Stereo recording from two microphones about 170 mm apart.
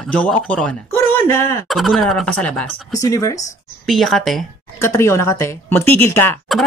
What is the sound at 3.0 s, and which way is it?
Speech, 20° left (ahead or behind).